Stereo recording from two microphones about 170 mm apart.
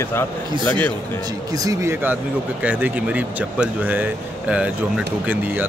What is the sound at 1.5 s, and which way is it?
Speech, 20° right (ahead or behind).